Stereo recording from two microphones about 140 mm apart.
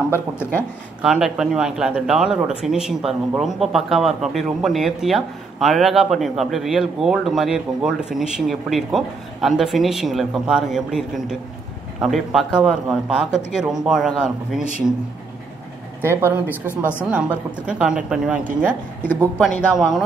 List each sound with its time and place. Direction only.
0.4 s speech: 15° left (ahead or behind)
1.0 s a man's voice: 5° right (ahead or behind)
16.0 s speech: 15° right (ahead or behind)
16.4 s speech: 15° left (ahead or behind)
17.0 s a man's voice: 10° right (ahead or behind)
19.7 s a man's voice: centre (ahead or behind)